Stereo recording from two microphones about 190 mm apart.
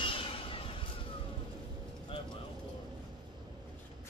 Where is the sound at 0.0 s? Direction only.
25° left (ahead or behind).